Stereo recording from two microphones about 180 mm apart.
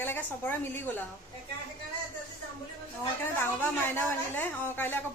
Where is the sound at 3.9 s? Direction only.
10° left (ahead or behind).